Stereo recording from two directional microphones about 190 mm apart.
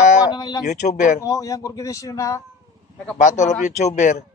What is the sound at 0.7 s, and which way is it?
Speech, 40° left (ahead or behind).